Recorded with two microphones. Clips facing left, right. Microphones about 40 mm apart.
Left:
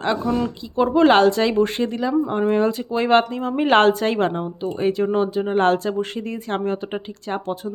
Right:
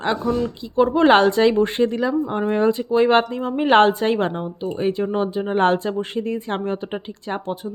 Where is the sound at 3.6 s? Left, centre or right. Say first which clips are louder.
Right 1 dB; centre.